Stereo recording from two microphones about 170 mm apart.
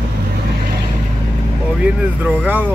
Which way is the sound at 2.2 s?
10° right (ahead or behind).